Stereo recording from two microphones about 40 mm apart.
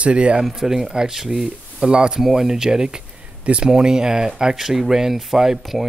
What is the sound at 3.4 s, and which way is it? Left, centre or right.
Speech, right.